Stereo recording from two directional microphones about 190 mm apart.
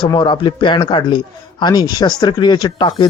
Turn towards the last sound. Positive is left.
turn(degrees=25)  # may be behind; listen again after turning